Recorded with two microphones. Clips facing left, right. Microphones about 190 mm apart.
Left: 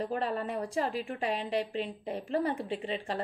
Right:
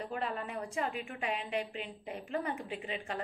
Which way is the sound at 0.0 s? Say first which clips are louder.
Left 5 dB; 35° left (ahead or behind).